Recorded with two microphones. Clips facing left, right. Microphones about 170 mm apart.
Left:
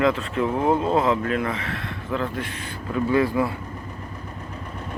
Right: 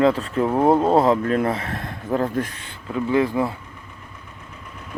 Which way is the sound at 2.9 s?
20° right (ahead or behind).